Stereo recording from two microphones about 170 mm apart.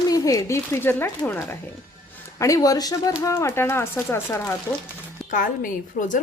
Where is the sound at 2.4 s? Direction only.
20° left (ahead or behind).